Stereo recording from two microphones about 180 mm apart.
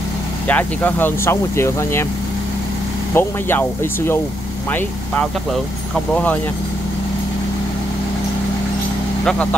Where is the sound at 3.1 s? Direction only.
10° left (ahead or behind).